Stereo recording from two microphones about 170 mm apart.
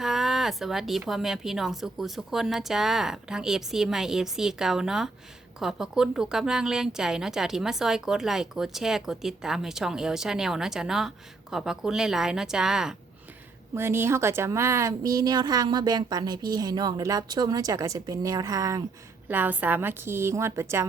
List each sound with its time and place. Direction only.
0.0 s speech: centre (ahead or behind)
13.7 s a woman's voice: 15° right (ahead or behind)